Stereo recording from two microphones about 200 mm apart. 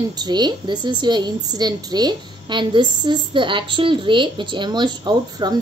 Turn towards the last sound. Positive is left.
turn(degrees=-20)  # may be behind; listen again after turning